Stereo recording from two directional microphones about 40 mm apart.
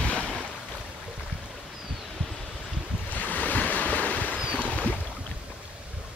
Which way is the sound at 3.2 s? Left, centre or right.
Left.